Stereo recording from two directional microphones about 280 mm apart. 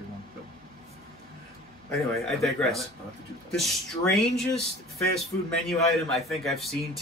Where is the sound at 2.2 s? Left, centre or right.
Centre.